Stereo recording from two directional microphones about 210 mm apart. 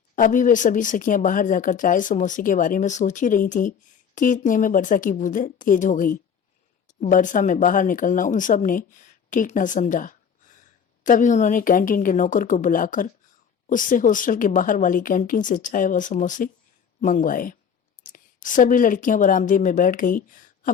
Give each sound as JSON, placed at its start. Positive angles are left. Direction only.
{"t": 0.2, "sound": "speech", "side_deg": 40}